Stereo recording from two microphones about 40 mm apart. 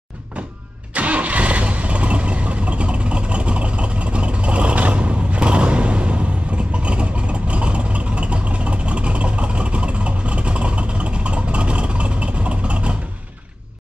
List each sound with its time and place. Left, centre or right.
0.9 s vehicle: right